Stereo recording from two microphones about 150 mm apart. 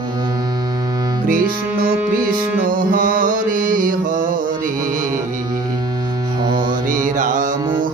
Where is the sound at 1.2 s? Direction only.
70° right (ahead or behind).